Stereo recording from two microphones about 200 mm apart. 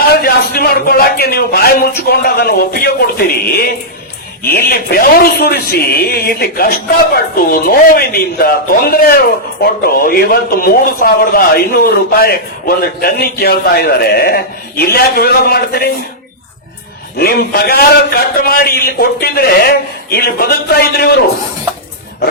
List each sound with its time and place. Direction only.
0.0 s a man's voice: 50° left (ahead or behind)
17.2 s a man's voice: 50° left (ahead or behind)